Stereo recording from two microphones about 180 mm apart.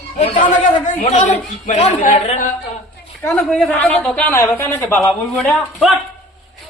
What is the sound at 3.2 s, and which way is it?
A woman's voice, 5° left (ahead or behind).